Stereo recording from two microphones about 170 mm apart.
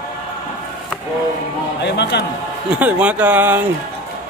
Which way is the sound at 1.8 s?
85° left.